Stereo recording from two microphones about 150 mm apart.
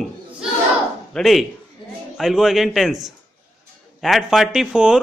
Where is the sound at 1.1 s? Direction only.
Centre (ahead or behind).